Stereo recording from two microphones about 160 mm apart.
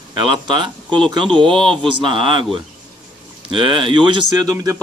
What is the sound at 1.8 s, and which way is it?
Speech, 30° right (ahead or behind).